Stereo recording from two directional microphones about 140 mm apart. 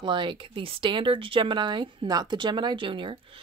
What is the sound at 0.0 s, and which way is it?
Speech, 35° right (ahead or behind).